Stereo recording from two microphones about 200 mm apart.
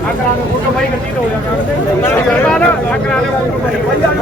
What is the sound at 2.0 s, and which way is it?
Speech, 10° left (ahead or behind).